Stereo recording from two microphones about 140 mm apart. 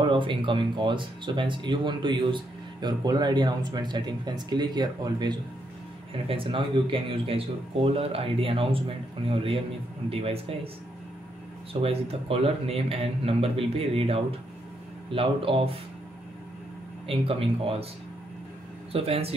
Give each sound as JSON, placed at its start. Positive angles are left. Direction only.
{"t": 0.1, "sound": "speech", "side_deg": -35}
{"t": 11.7, "sound": "speech", "side_deg": -45}
{"t": 17.1, "sound": "speech", "side_deg": -40}
{"t": 18.9, "sound": "speech", "side_deg": -45}